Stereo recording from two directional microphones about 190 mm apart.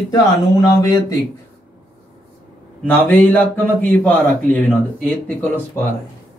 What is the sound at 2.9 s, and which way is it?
A man's voice, 10° left (ahead or behind).